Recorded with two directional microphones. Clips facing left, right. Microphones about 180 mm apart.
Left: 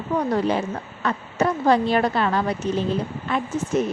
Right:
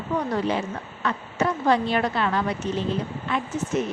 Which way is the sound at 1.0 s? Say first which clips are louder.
Left 2 dB; 40° left (ahead or behind).